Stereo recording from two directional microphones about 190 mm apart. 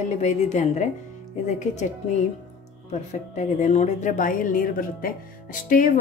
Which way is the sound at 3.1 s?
40° left (ahead or behind).